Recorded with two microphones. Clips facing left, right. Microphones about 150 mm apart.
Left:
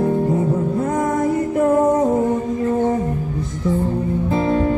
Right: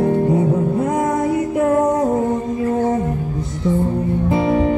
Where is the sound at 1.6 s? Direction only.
5° left (ahead or behind).